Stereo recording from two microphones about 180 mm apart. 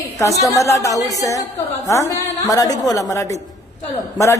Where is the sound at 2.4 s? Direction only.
20° left (ahead or behind).